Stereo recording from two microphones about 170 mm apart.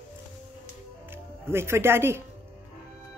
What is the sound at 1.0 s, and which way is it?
Speech, 15° right (ahead or behind).